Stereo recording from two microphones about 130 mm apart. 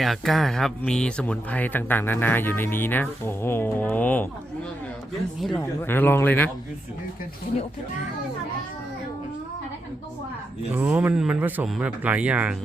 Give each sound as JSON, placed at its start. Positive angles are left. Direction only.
{"t": 0.0, "sound": "speech", "side_deg": 0}
{"t": 5.5, "sound": "speech", "side_deg": 15}
{"t": 10.7, "sound": "speech", "side_deg": -15}